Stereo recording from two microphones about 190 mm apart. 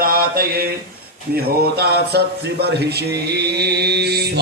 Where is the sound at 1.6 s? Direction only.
55° right (ahead or behind).